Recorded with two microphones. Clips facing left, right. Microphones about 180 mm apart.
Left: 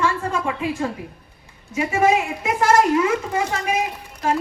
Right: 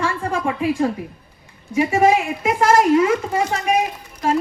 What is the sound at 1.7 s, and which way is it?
A woman's voice, 30° right (ahead or behind).